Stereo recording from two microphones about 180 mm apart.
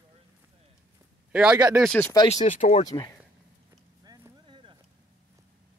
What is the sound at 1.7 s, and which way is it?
Speech, 5° left (ahead or behind).